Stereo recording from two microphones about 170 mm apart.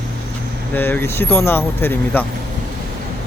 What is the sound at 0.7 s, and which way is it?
Speech, 10° left (ahead or behind).